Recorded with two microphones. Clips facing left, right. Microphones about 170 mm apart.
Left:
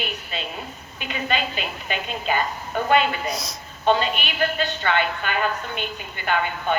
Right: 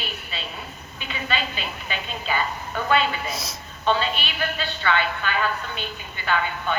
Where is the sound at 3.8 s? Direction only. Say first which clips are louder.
Left 3 dB; 50° left (ahead or behind).